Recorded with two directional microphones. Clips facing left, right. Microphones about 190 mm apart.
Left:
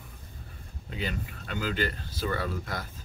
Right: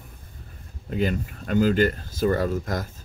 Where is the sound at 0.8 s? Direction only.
45° right (ahead or behind).